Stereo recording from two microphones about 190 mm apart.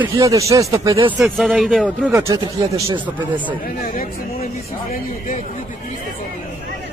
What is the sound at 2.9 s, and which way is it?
Speech, 10° right (ahead or behind).